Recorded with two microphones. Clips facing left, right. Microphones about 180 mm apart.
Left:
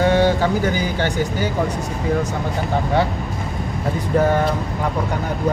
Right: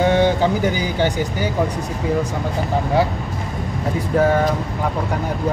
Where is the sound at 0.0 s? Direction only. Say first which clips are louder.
Even; 20° right (ahead or behind).